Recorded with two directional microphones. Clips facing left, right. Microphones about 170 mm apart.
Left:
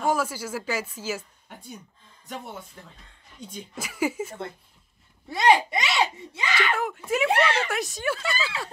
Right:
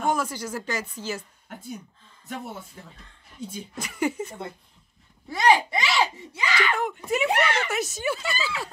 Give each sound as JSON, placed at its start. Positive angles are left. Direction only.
{"t": 0.0, "sound": "speech", "side_deg": 5}
{"t": 3.3, "sound": "speech", "side_deg": 0}
{"t": 5.3, "sound": "speech", "side_deg": 20}
{"t": 6.7, "sound": "speech", "side_deg": 0}
{"t": 7.3, "sound": "speech", "side_deg": 30}
{"t": 7.7, "sound": "speech", "side_deg": 0}